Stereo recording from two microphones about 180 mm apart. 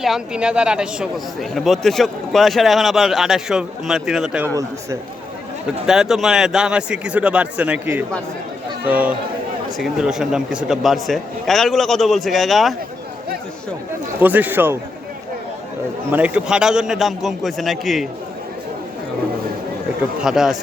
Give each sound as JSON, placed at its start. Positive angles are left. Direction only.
{"t": 0.0, "sound": "speech", "side_deg": -5}
{"t": 5.6, "sound": "speech", "side_deg": 0}
{"t": 14.2, "sound": "speech", "side_deg": -10}
{"t": 16.1, "sound": "speech", "side_deg": -5}
{"t": 20.2, "sound": "speech", "side_deg": 0}